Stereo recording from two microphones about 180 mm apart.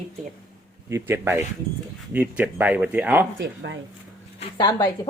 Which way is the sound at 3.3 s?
85° right.